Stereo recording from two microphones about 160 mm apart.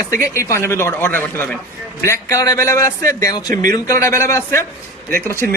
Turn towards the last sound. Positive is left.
turn(degrees=15)  # may be behind; listen again after turning